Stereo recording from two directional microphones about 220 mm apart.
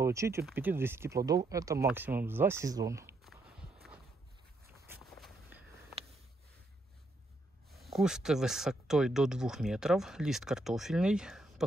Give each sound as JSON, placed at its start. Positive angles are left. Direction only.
{"t": 0.0, "sound": "speech", "side_deg": -15}
{"t": 5.1, "sound": "walk", "side_deg": 0}
{"t": 7.7, "sound": "speech", "side_deg": 0}